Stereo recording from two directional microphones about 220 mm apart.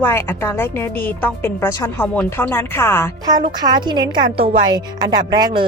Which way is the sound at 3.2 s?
20° right (ahead or behind).